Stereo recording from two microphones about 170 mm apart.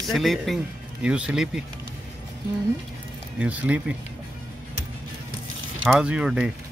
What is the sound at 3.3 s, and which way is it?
Speech, 10° right (ahead or behind).